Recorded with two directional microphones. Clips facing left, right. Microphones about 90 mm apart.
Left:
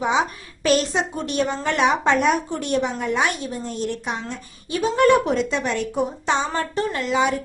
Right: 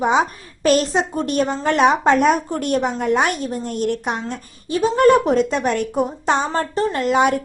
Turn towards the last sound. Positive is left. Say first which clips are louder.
# right 4 dB
turn(degrees=-55)  # may be behind; listen again after turning